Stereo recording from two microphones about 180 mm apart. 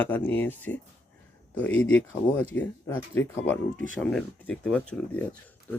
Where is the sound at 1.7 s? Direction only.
90° left.